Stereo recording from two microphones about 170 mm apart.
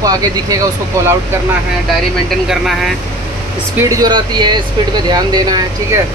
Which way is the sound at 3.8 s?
20° right (ahead or behind).